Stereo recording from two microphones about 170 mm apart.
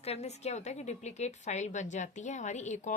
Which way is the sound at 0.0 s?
40° left (ahead or behind).